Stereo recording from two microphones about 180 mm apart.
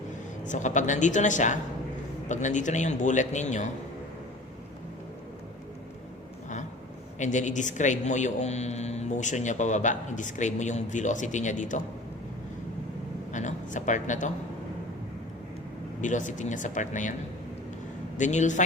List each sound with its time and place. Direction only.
0.4 s a man's voice: 45° left (ahead or behind)
7.2 s a man's voice: 40° left (ahead or behind)
13.3 s a man's voice: 45° left (ahead or behind)
16.0 s a man's voice: 45° left (ahead or behind)
18.2 s a man's voice: 40° left (ahead or behind)